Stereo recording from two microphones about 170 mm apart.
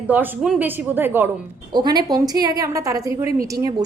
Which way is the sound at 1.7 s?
25° right (ahead or behind).